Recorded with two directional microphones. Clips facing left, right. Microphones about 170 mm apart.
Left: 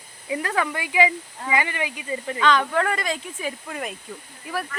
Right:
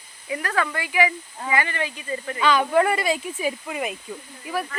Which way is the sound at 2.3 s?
10° right (ahead or behind).